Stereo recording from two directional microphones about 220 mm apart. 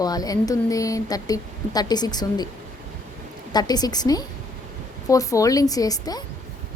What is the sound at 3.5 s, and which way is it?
A woman's voice, 20° left (ahead or behind).